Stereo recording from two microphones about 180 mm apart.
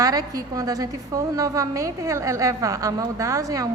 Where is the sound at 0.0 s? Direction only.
20° right (ahead or behind).